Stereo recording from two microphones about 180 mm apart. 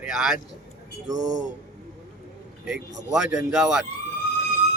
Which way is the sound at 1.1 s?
20° right (ahead or behind).